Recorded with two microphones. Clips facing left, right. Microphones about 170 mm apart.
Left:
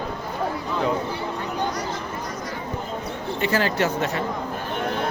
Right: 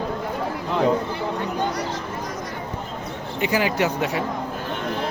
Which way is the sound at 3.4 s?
15° right (ahead or behind).